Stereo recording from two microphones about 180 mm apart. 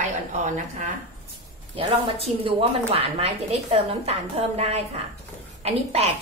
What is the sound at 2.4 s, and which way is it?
A woman's voice, 35° right (ahead or behind).